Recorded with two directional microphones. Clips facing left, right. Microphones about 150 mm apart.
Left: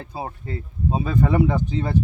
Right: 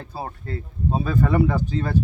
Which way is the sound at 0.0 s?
15° left (ahead or behind).